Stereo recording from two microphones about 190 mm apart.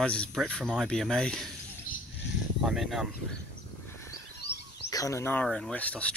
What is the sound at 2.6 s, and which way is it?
Speech, centre (ahead or behind).